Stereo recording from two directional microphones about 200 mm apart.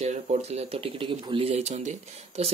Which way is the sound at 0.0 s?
35° right (ahead or behind).